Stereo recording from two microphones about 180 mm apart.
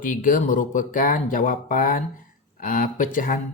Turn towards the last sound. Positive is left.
turn(degrees=50)  # may be behind; listen again after turning